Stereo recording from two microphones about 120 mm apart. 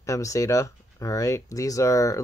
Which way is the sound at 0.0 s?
25° left (ahead or behind).